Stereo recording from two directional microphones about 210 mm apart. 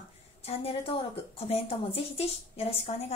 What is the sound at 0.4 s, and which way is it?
A woman's voice, 25° left (ahead or behind).